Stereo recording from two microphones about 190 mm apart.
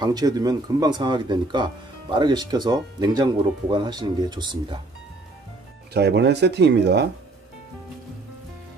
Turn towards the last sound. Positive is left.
turn(degrees=-65)  # may be behind; listen again after turning